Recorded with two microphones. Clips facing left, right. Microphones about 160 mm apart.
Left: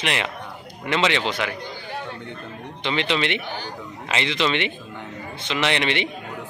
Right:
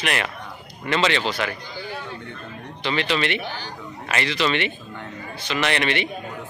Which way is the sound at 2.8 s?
20° left (ahead or behind).